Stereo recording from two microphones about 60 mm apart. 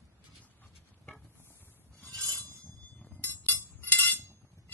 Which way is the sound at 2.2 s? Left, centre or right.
Left.